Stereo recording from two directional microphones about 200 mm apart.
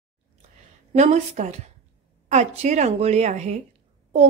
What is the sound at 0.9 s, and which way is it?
A woman's voice, 35° right (ahead or behind).